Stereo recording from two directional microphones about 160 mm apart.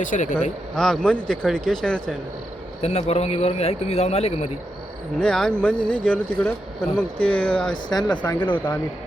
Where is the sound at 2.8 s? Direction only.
40° left (ahead or behind).